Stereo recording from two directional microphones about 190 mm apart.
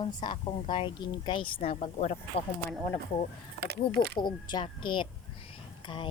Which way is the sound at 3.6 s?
60° right (ahead or behind).